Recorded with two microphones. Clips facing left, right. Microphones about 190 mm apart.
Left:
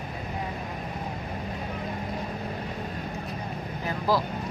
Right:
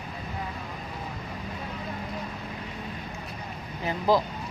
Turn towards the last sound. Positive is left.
turn(degrees=-20)  # may be behind; listen again after turning